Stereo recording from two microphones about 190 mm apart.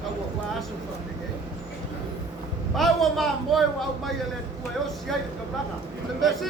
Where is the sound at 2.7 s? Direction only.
Centre (ahead or behind).